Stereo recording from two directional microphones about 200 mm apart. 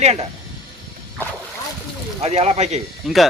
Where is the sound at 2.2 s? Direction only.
35° right (ahead or behind).